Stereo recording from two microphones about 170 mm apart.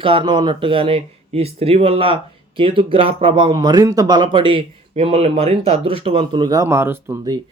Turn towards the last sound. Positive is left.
turn(degrees=-15)  # may be behind; listen again after turning